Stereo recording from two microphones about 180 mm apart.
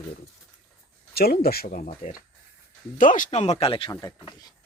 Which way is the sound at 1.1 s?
60° left (ahead or behind).